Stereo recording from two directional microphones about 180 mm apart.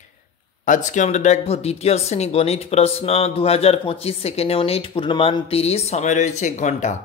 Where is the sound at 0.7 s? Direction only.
45° left (ahead or behind).